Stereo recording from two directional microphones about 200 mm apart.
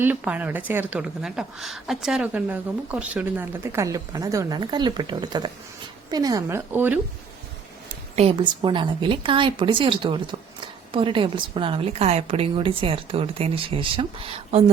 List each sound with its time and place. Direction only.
0.0 s a woman's voice: 10° right (ahead or behind)
8.1 s a woman's voice: 30° right (ahead or behind)